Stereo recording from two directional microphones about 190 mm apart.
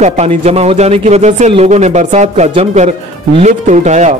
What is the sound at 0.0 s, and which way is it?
Speech, 35° right (ahead or behind).